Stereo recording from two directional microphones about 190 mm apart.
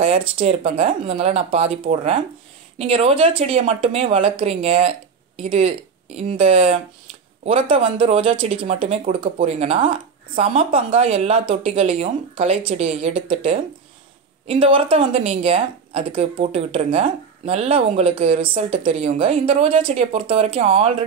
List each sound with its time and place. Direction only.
0.0 s speech: 35° right (ahead or behind)